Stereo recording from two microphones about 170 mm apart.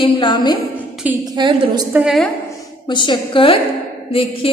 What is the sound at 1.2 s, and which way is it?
Speech, 25° right (ahead or behind).